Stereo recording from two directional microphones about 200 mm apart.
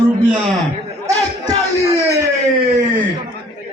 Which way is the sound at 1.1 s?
20° right (ahead or behind).